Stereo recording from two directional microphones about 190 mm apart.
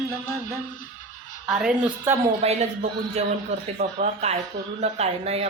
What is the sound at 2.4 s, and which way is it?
A man's voice, 35° right (ahead or behind).